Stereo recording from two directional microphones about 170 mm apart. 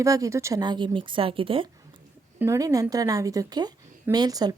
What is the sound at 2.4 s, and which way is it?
A woman's voice, 15° right (ahead or behind).